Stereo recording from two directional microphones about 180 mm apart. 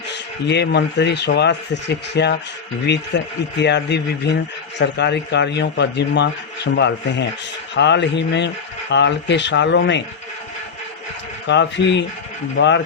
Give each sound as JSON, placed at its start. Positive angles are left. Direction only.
{"t": 0.1, "sound": "speech", "side_deg": 70}
{"t": 11.4, "sound": "speech", "side_deg": 80}